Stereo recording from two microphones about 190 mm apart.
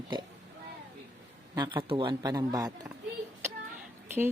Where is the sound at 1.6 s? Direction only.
25° right (ahead or behind).